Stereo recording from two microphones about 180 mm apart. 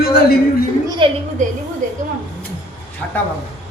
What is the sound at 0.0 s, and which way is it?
Speech, 65° left (ahead or behind).